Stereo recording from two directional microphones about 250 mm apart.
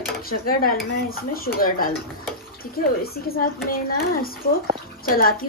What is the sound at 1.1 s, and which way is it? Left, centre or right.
Speech, left.